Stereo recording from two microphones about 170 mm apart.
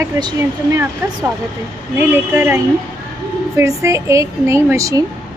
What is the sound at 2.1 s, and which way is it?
Speech, 10° right (ahead or behind).